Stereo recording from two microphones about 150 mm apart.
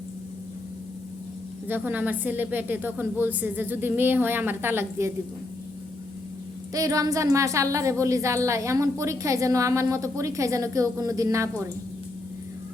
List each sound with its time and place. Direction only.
1.6 s a woman's voice: 10° right (ahead or behind)
6.7 s a woman's voice: 25° right (ahead or behind)